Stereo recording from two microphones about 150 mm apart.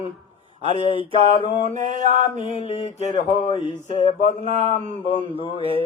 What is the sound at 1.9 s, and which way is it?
Mantra, 55° right (ahead or behind).